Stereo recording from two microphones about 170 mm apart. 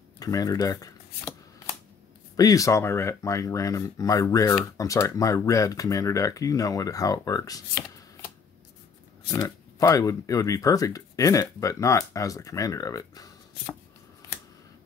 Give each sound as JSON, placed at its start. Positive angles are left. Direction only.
{"t": 0.2, "sound": "shuffling cards", "side_deg": 20}
{"t": 2.3, "sound": "speech", "side_deg": 20}
{"t": 9.3, "sound": "speech", "side_deg": 20}